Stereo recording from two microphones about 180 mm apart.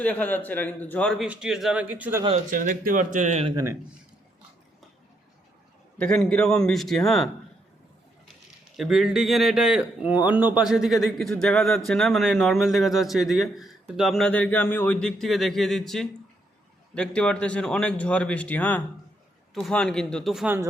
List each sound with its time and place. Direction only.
0.0 s speech: 10° left (ahead or behind); by 2.2 s 10° right (ahead or behind)
2.5 s speech: 50° right (ahead or behind)
3.5 s speech: 15° right (ahead or behind)
6.0 s speech: 5° left (ahead or behind)
8.7 s speech: centre (ahead or behind)